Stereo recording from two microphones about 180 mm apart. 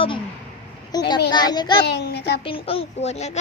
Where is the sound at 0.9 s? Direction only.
20° left (ahead or behind).